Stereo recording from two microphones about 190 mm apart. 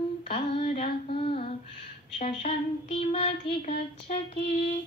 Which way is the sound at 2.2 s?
30° left (ahead or behind).